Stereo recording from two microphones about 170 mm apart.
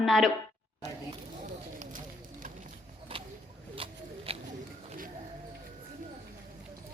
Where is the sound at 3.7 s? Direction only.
35° right (ahead or behind).